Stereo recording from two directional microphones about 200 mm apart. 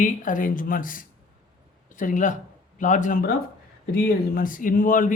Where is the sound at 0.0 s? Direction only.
40° left (ahead or behind).